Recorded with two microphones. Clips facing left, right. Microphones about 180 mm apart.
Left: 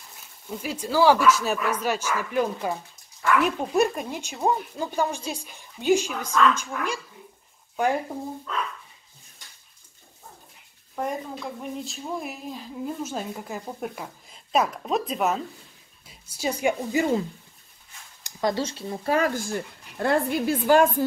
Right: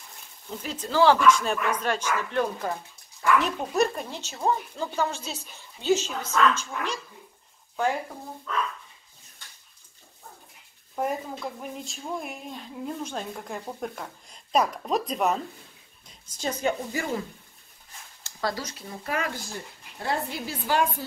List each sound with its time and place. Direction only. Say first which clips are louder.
0.5 s speech: left 3 dB; 10° left (ahead or behind)
11.0 s a woman's voice: right 1 dB; 5° right (ahead or behind); by 17.2 s 20° left (ahead or behind)
18.2 s speech: left 5 dB; 20° left (ahead or behind)
19.3 s a woman's voice: left 8 dB; 60° left (ahead or behind)